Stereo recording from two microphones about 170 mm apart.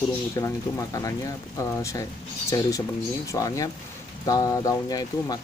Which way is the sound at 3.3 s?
20° left (ahead or behind).